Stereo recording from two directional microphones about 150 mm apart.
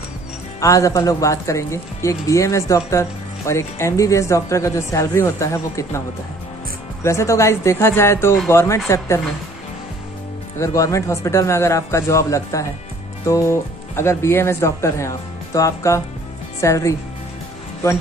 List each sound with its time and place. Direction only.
0.6 s speech: 20° left (ahead or behind)
10.6 s speech: 20° left (ahead or behind)